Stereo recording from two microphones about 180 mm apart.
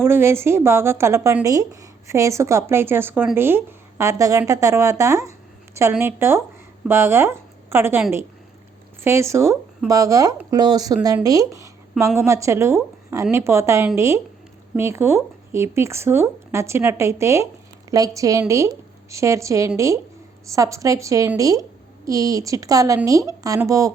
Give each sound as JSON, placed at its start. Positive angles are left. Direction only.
{"t": 0.0, "sound": "a woman's voice", "side_deg": -15}
{"t": 9.0, "sound": "a woman's voice", "side_deg": -15}